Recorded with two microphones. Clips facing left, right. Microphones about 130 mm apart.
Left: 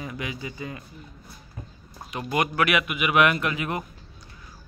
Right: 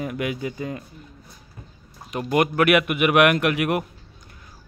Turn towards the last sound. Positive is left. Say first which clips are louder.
# right 6 dB
turn(degrees=-70)  # may be behind; listen again after turning